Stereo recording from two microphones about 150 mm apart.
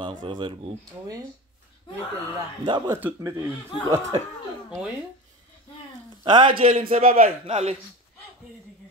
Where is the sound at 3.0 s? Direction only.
15° right (ahead or behind).